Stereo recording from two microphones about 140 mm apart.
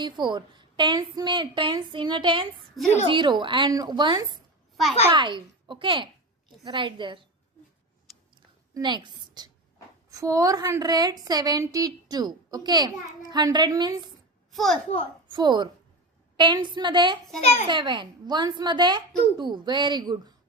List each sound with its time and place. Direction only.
0.0 s a woman's voice: 35° right (ahead or behind)
2.8 s a woman's voice: centre (ahead or behind)
3.1 s a woman's voice: 35° right (ahead or behind)
8.7 s a woman's voice: 30° right (ahead or behind)
14.5 s a child's voice: centre (ahead or behind)
15.3 s a woman's voice: 30° right (ahead or behind)
17.4 s a child's voice: 50° left (ahead or behind)
17.7 s a woman's voice: 35° right (ahead or behind)